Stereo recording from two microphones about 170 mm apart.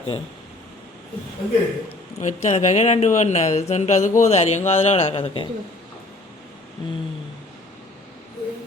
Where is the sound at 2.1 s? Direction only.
40° left (ahead or behind).